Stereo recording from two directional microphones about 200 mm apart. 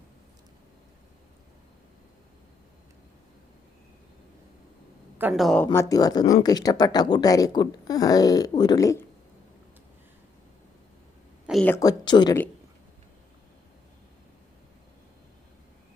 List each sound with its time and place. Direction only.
5.1 s speech: 5° right (ahead or behind)
5.6 s a woman's voice: 15° left (ahead or behind)
11.6 s speech: 15° left (ahead or behind)